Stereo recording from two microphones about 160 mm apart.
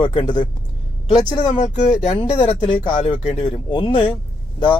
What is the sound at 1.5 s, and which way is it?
Speech, 45° left (ahead or behind).